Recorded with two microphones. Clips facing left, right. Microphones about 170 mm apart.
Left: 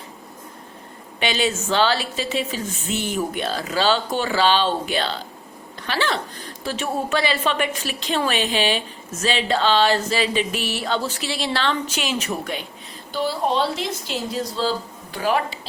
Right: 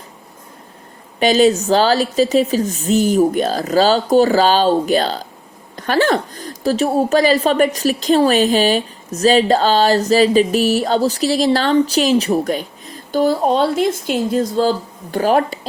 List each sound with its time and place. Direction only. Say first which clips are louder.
1.2 s a woman's voice: right 10 dB; 40° right (ahead or behind)